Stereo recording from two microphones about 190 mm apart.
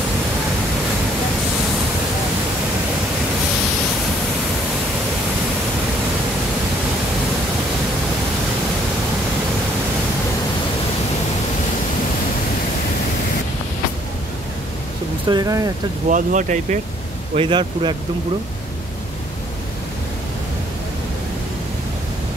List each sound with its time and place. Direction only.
15.2 s a man's voice: 20° right (ahead or behind)
16.1 s speech: 45° right (ahead or behind)
17.4 s a man's voice: 25° right (ahead or behind)